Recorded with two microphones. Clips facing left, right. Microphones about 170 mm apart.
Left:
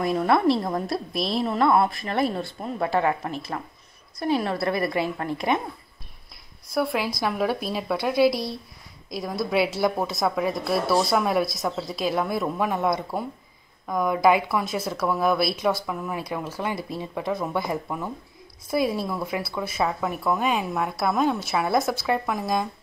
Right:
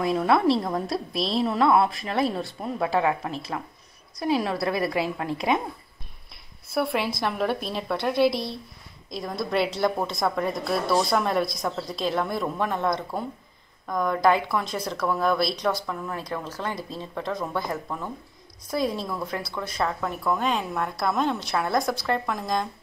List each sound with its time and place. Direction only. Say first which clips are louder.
0.1 s a woman's voice: even; centre (ahead or behind)
1.1 s a woman's voice: even; 30° right (ahead or behind)
1.4 s a woman's voice: even; 5° right (ahead or behind)
6.7 s a woman's voice: even; centre (ahead or behind)